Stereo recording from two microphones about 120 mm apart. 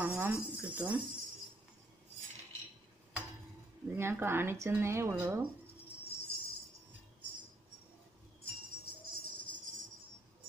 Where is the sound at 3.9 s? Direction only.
20° right (ahead or behind).